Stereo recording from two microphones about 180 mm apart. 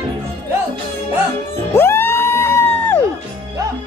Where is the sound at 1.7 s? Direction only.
15° left (ahead or behind).